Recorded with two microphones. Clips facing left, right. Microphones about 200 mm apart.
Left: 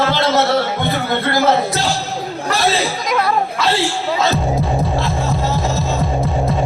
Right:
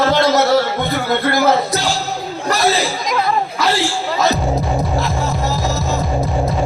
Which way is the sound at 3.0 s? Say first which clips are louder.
Left 2 dB; centre (ahead or behind).